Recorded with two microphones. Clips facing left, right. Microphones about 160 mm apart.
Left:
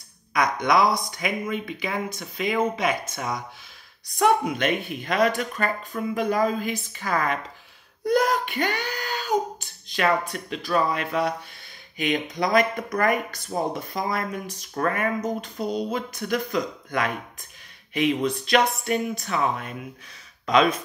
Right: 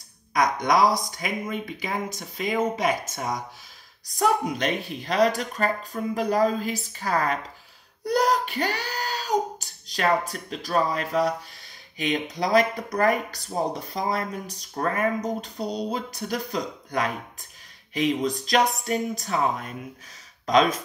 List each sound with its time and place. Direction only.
0.3 s speech: 40° right (ahead or behind)
9.6 s a sound: 40° right (ahead or behind)
10.3 s speech: 35° right (ahead or behind)